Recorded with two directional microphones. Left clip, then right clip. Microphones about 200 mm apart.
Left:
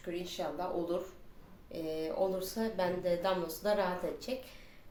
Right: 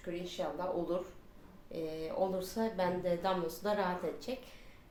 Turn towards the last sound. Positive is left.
turn(degrees=0)  # may be behind; listen again after turning